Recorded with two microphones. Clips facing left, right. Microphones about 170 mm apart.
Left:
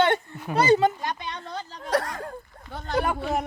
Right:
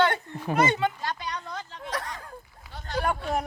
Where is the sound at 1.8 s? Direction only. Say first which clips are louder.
Left 9 dB; 70° left (ahead or behind).